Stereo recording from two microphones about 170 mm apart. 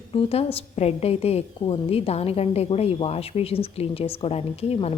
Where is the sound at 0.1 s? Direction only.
35° left (ahead or behind).